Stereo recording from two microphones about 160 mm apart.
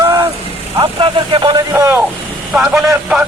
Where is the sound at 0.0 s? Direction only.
20° right (ahead or behind).